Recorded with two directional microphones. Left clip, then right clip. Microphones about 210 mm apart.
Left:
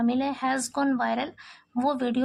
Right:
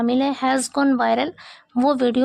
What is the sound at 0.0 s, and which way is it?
A woman's voice, 40° right (ahead or behind).